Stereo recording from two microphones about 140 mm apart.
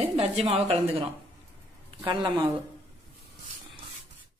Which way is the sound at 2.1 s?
35° right (ahead or behind).